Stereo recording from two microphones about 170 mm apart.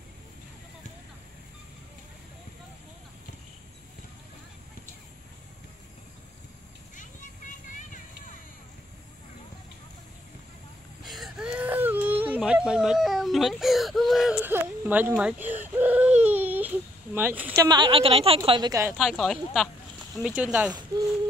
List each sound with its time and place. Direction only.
7.0 s a sound: 50° left (ahead or behind)
11.1 s whimper: centre (ahead or behind)
17.6 s a woman's voice: 25° right (ahead or behind)
18.9 s speech: centre (ahead or behind)